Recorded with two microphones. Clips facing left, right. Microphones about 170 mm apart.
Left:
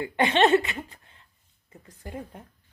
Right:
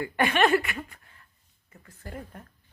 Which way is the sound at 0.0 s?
20° left (ahead or behind).